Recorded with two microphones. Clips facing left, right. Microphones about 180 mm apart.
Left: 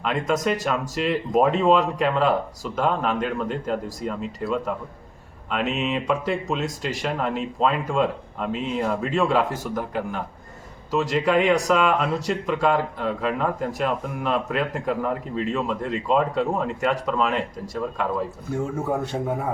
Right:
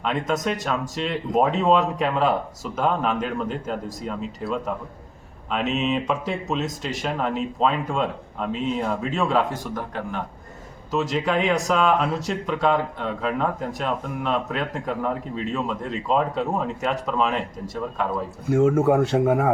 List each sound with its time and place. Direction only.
0.0 s speech: centre (ahead or behind)
18.5 s speech: 90° right